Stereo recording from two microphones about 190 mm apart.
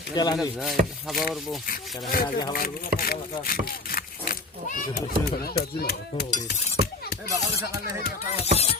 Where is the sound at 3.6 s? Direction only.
50° left (ahead or behind).